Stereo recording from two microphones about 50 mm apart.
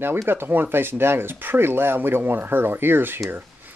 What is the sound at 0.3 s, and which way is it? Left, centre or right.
Speech, right.